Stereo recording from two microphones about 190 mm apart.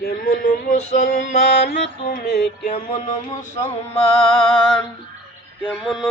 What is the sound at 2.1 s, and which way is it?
Music, 55° left (ahead or behind).